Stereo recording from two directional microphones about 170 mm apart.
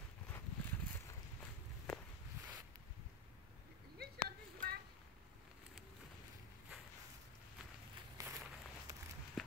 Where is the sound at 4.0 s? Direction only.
70° right (ahead or behind).